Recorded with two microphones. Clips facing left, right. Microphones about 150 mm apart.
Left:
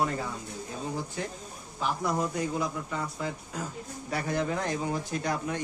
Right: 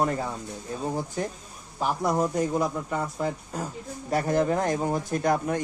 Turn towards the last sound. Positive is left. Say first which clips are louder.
# right 6 dB
turn(degrees=-50)  # may be behind; listen again after turning